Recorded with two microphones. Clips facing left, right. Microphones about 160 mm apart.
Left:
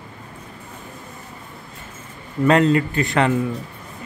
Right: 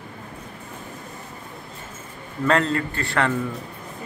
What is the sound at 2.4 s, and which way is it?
Speech, 15° left (ahead or behind).